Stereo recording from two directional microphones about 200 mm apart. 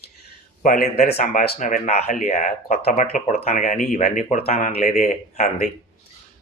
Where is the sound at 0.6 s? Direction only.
45° left (ahead or behind).